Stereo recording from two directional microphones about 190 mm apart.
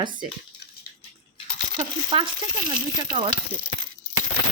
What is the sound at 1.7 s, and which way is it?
Speech, 25° right (ahead or behind).